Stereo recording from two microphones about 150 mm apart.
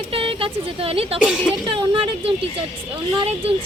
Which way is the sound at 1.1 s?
5° right (ahead or behind).